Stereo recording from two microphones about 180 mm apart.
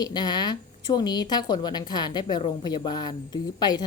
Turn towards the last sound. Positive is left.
turn(degrees=25)  # may be behind; listen again after turning